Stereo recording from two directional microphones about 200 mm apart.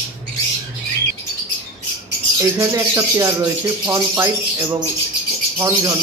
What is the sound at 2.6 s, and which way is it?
Speech, 15° right (ahead or behind).